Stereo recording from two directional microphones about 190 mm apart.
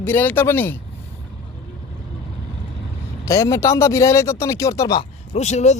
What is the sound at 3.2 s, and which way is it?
Speech, 15° left (ahead or behind).